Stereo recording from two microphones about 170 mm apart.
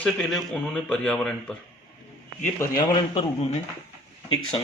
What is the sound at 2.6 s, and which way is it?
Speech, 25° left (ahead or behind).